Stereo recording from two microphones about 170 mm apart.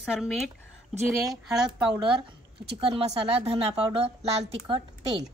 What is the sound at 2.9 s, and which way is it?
A woman's voice, 35° right (ahead or behind).